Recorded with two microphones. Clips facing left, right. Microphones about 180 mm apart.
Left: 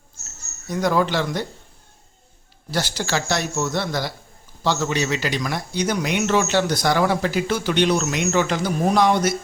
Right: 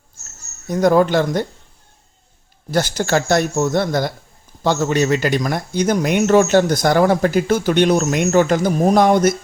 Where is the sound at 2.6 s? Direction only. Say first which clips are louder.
Right 6 dB; 50° right (ahead or behind).